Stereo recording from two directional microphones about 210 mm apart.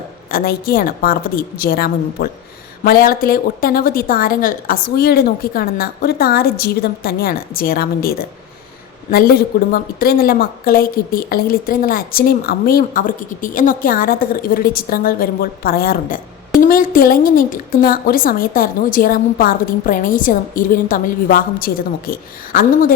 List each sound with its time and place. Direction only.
0.3 s a woman's voice: 45° left (ahead or behind)